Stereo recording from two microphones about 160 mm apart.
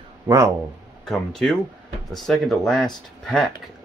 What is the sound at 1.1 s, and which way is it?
Speech, 5° left (ahead or behind).